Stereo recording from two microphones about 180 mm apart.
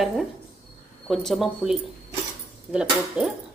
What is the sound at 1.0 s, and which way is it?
Speech, centre (ahead or behind).